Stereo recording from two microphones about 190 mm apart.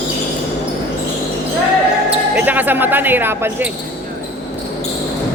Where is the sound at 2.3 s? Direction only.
10° right (ahead or behind).